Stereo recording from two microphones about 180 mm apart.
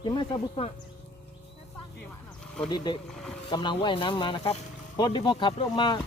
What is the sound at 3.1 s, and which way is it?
Speech, 5° left (ahead or behind).